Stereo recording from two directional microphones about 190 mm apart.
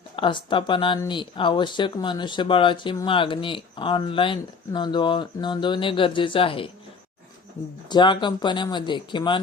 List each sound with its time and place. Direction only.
0.2 s speech: 25° left (ahead or behind)
7.9 s speech: 25° left (ahead or behind)